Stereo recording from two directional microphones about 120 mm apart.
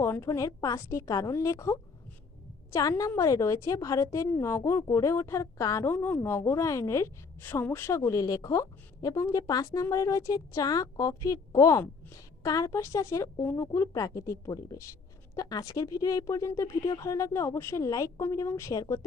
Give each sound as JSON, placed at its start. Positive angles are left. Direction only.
{"t": 0.0, "sound": "a woman's voice", "side_deg": 25}
{"t": 3.0, "sound": "a woman's voice", "side_deg": 25}